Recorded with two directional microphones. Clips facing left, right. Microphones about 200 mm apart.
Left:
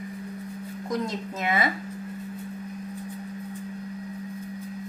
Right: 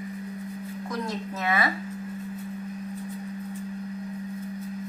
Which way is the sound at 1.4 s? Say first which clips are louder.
Left 1 dB; 20° left (ahead or behind).